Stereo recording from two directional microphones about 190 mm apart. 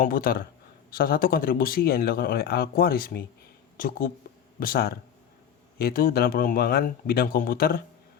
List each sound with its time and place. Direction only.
0.0 s speech: 50° left (ahead or behind)